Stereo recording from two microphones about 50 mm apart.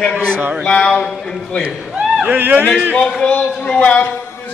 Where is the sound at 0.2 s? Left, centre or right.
Right.